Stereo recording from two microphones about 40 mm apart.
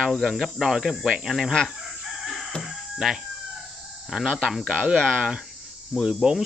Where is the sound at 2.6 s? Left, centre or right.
Centre.